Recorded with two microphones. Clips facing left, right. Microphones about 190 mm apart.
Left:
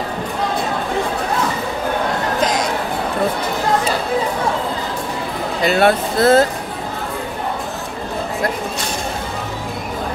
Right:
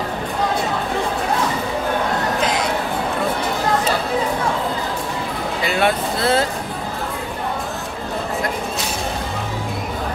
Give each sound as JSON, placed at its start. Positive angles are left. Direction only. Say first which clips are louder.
{"t": 5.7, "sound": "speech", "louder": "left 5 dB", "side_deg": 40}